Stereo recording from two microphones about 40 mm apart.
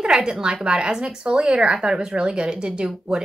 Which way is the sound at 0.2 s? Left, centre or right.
Centre.